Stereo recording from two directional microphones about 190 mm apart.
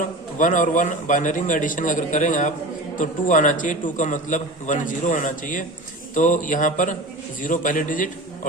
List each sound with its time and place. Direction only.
0.3 s a man's voice: 45° left (ahead or behind)